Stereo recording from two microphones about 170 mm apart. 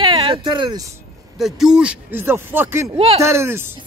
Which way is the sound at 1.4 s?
5° right (ahead or behind).